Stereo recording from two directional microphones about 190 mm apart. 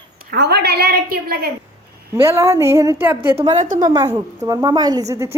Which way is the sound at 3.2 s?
30° right (ahead or behind).